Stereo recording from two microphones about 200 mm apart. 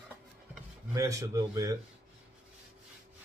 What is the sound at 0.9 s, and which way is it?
Speech, 15° right (ahead or behind).